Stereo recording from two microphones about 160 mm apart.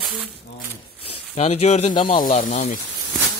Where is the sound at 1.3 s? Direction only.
45° left (ahead or behind).